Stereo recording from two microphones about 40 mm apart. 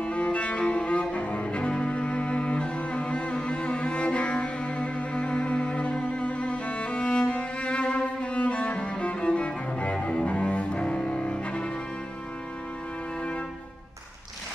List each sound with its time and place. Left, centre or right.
0.0 s cello: left